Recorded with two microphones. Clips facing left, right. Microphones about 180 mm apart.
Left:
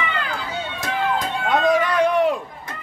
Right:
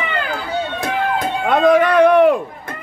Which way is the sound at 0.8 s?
60° right (ahead or behind).